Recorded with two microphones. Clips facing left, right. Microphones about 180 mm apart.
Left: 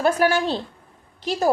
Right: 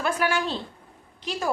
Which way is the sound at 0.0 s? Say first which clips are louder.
Left 6 dB; 40° left (ahead or behind).